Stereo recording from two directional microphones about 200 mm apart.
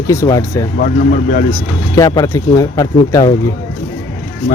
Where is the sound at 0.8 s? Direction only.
40° left (ahead or behind).